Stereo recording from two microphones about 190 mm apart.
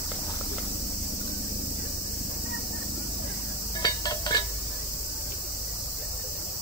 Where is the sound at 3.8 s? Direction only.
20° left (ahead or behind).